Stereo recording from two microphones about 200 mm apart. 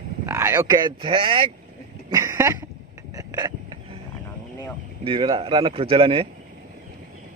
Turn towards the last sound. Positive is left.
turn(degrees=-25)  # may be behind; listen again after turning